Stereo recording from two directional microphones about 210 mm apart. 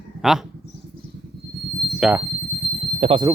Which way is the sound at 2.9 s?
30° right (ahead or behind).